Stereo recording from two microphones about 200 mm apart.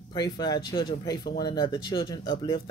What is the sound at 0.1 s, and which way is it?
Speech, 20° left (ahead or behind).